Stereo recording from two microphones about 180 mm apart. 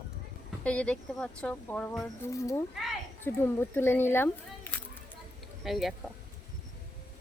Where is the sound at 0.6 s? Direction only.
5° left (ahead or behind).